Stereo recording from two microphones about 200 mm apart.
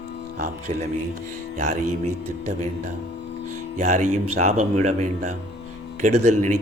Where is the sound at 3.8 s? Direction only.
35° right (ahead or behind).